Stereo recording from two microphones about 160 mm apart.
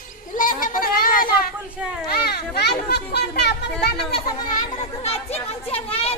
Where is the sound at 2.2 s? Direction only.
85° left.